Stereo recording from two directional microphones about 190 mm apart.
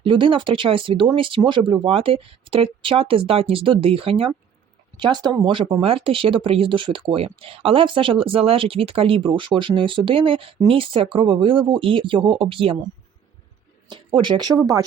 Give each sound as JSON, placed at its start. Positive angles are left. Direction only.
{"t": 0.0, "sound": "speech", "side_deg": -25}
{"t": 13.9, "sound": "speech", "side_deg": -25}